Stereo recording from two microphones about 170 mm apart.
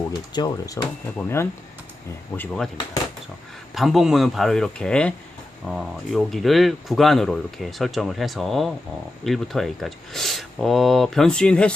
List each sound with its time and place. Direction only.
0.1 s speech: 25° left (ahead or behind); by 2.6 s 10° left (ahead or behind)
3.8 s speech: centre (ahead or behind)